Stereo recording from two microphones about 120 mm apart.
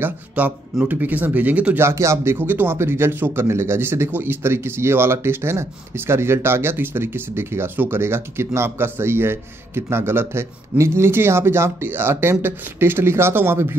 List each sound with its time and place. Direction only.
0.0 s speech: 15° right (ahead or behind)